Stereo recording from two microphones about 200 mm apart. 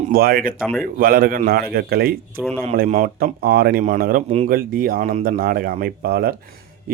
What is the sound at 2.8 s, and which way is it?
Speech, 40° right (ahead or behind).